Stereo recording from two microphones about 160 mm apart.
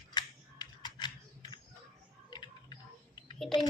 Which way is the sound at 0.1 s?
25° left (ahead or behind).